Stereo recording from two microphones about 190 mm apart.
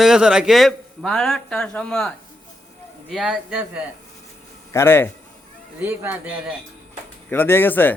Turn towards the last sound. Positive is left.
turn(degrees=10)  # may be behind; listen again after turning